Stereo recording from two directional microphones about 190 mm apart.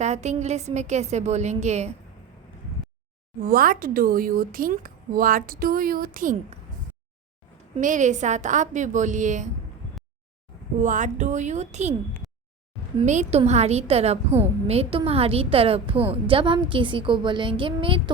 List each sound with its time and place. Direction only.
0.0 s a woman's voice: 35° right (ahead or behind)
3.4 s a woman's voice: 50° right (ahead or behind)
7.8 s a woman's voice: 40° right (ahead or behind)
10.8 s a woman's voice: 40° right (ahead or behind)
12.2 s a sound: centre (ahead or behind)
13.1 s a woman's voice: 35° right (ahead or behind)